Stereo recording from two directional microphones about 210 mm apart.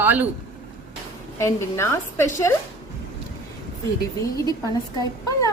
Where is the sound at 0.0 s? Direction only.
10° right (ahead or behind).